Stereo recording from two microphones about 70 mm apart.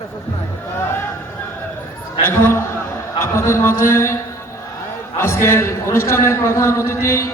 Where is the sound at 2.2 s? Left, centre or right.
Left.